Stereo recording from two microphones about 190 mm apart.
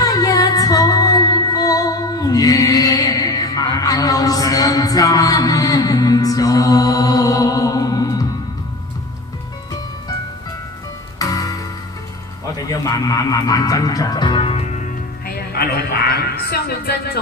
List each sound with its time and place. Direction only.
0.0 s music: 20° left (ahead or behind)
11.2 s music: 20° left (ahead or behind)
12.5 s speech: 20° left (ahead or behind); by 17.2 s 55° left (ahead or behind)